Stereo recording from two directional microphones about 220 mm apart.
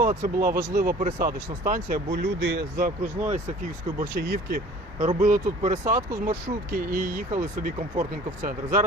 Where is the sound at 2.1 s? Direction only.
50° right (ahead or behind).